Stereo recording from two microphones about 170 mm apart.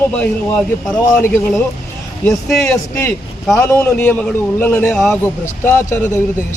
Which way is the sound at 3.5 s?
15° left (ahead or behind).